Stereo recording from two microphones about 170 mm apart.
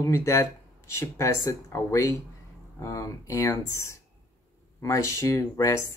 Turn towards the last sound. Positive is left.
turn(degrees=20)  # may be behind; listen again after turning